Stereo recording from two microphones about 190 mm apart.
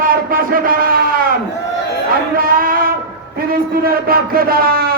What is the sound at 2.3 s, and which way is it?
Speech, 50° right (ahead or behind).